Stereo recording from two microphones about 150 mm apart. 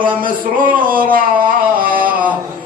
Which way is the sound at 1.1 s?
70° right (ahead or behind).